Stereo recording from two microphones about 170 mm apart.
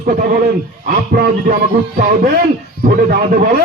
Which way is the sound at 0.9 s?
60° right (ahead or behind).